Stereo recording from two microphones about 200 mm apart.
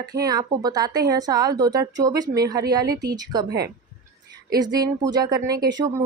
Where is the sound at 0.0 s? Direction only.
20° right (ahead or behind).